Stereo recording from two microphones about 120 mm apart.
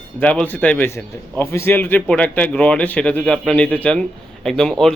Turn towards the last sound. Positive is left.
turn(degrees=5)  # may be behind; listen again after turning